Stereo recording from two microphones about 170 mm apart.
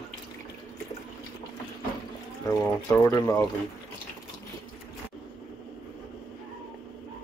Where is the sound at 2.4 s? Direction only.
15° left (ahead or behind).